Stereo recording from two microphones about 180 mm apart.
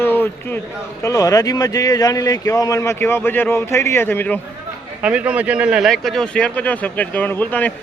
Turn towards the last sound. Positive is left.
turn(degrees=10)  # may be behind; listen again after turning